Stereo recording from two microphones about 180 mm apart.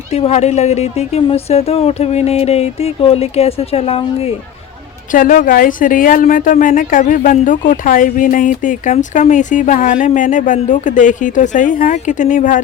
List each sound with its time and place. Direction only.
0.1 s speech: 35° left (ahead or behind)
5.1 s a woman's voice: 50° left (ahead or behind)